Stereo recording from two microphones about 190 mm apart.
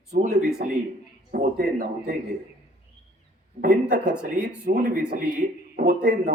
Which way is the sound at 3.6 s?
40° right (ahead or behind).